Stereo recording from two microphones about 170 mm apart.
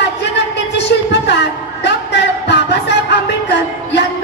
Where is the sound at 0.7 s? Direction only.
90° left.